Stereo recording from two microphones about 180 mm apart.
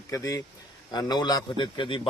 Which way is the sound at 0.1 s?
20° left (ahead or behind).